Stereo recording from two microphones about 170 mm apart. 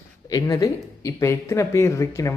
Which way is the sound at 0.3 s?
20° left (ahead or behind).